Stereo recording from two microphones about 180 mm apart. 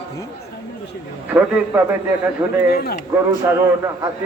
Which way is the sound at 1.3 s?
10° right (ahead or behind).